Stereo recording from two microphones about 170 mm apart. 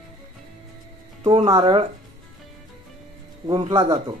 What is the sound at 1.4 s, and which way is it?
Speech, 25° right (ahead or behind).